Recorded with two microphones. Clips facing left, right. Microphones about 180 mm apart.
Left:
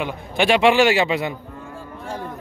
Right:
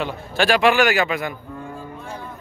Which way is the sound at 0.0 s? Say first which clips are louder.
Left 1 dB; 20° left (ahead or behind).